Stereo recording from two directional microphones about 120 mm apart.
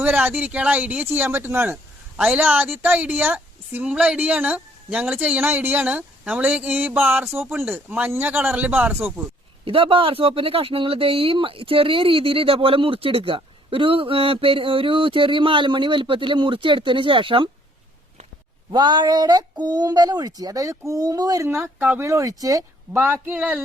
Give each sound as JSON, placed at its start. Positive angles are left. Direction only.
{"t": 0.0, "sound": "speech", "side_deg": -15}
{"t": 9.6, "sound": "speech", "side_deg": -45}
{"t": 18.7, "sound": "speech", "side_deg": -40}
{"t": 22.9, "sound": "speech", "side_deg": -20}